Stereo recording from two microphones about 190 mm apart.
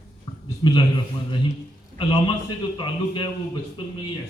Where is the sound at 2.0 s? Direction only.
25° left (ahead or behind).